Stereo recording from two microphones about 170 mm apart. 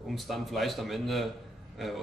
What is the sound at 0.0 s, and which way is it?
A man's voice, centre (ahead or behind).